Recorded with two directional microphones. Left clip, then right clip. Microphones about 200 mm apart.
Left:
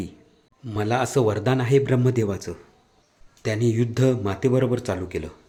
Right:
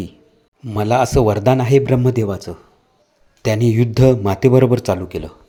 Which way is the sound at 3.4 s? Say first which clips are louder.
Right 7 dB; 30° right (ahead or behind).